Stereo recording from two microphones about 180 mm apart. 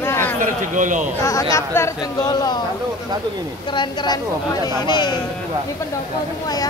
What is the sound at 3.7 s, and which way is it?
Speech, 25° left (ahead or behind).